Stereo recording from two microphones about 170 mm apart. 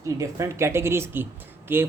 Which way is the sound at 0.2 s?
15° right (ahead or behind).